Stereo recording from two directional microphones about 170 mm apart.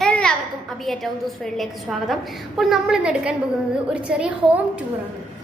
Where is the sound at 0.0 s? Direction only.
5° left (ahead or behind).